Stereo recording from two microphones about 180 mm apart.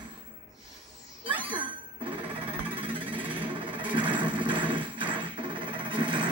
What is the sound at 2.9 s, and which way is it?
Music, 30° right (ahead or behind).